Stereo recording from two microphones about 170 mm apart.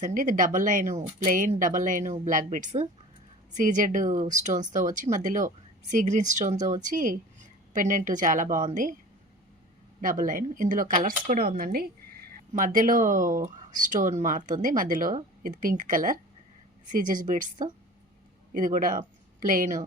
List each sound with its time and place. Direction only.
0.0 s speech: 50° right (ahead or behind)
10.0 s speech: 55° right (ahead or behind)